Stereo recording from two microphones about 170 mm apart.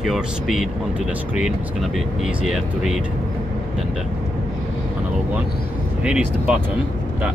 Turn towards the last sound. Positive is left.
turn(degrees=-5)  # may be behind; listen again after turning